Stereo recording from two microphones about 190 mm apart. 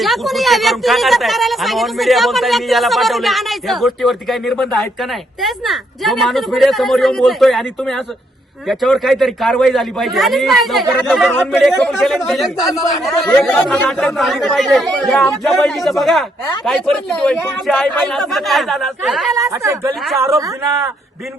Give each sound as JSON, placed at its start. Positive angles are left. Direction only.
{"t": 0.0, "sound": "speech", "side_deg": 0}
{"t": 19.3, "sound": "speech", "side_deg": -15}